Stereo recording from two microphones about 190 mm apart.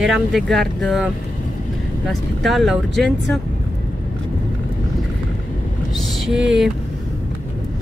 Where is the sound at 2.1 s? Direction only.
Centre (ahead or behind).